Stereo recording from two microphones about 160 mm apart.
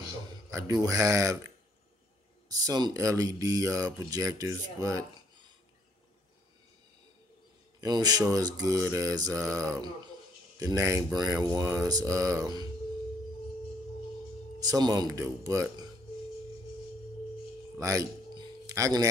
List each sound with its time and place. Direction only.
0.5 s speech: 20° right (ahead or behind)
2.5 s speech: 25° right (ahead or behind)
7.8 s speech: 25° right (ahead or behind)
14.6 s speech: 25° right (ahead or behind)
17.7 s music: 20° right (ahead or behind)